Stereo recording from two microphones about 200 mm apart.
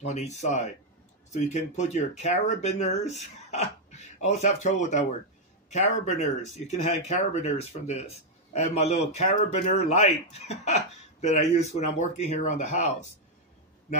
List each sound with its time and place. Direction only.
0.0 s speech: 35° left (ahead or behind)